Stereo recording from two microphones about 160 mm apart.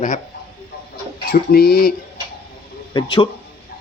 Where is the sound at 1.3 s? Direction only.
75° left (ahead or behind).